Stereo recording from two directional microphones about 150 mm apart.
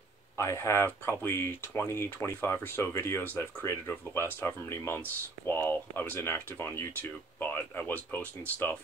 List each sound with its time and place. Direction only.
0.4 s speech: 15° left (ahead or behind)